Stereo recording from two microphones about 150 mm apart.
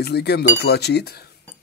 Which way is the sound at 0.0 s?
90° left.